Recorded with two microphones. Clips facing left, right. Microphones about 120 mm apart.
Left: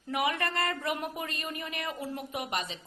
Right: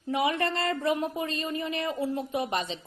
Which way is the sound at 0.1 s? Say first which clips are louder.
Right 4 dB; 25° right (ahead or behind).